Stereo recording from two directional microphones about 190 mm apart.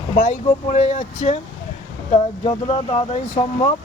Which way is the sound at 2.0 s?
25° left (ahead or behind).